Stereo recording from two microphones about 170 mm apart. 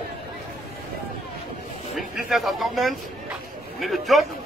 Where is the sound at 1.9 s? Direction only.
Centre (ahead or behind).